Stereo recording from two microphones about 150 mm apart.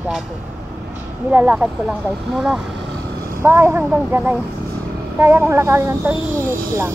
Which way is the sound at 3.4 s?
15° right (ahead or behind).